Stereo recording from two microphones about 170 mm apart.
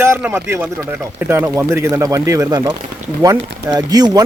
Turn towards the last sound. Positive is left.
turn(degrees=-20)  # may be behind; listen again after turning